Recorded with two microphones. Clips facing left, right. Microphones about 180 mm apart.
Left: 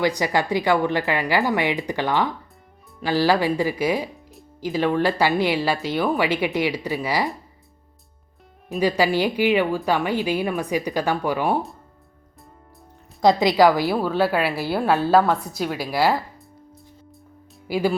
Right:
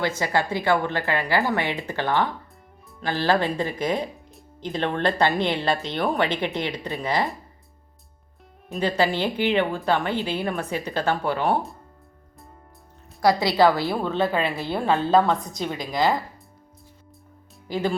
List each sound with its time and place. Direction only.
0.0 s speech: 15° left (ahead or behind)
8.8 s speech: 10° left (ahead or behind)
13.2 s a woman's voice: 15° left (ahead or behind)
17.7 s speech: 10° left (ahead or behind)